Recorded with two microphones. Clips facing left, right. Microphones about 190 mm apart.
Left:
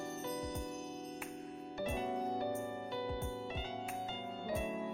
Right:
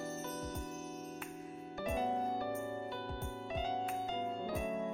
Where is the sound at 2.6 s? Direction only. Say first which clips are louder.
Right 2 dB; 20° left (ahead or behind).